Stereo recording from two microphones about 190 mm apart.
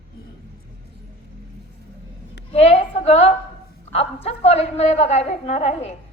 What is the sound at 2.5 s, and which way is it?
A woman's voice, 35° left (ahead or behind).